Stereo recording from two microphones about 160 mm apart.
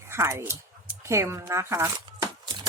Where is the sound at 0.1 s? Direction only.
15° right (ahead or behind).